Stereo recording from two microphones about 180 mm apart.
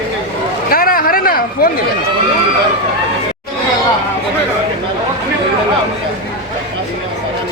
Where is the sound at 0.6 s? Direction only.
55° left (ahead or behind).